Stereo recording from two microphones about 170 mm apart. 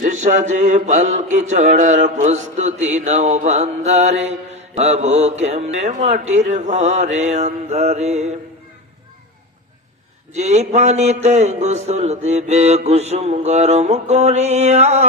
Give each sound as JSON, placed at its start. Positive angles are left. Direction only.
{"t": 0.0, "sound": "mantra", "side_deg": -50}
{"t": 10.3, "sound": "a man's voice", "side_deg": -40}